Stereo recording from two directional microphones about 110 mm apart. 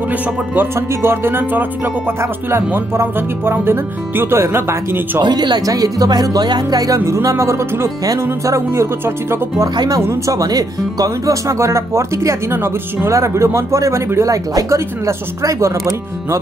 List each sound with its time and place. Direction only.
0.6 s speech: 20° right (ahead or behind)
5.2 s speech: 40° right (ahead or behind)